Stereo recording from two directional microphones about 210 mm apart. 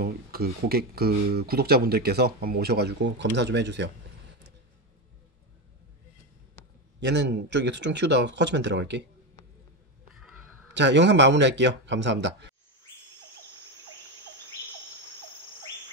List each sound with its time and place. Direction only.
0.0 s speech: 45° right (ahead or behind)
7.0 s a man's voice: 55° right (ahead or behind)
10.4 s a man's voice: 90° right; by 12.5 s 55° right (ahead or behind)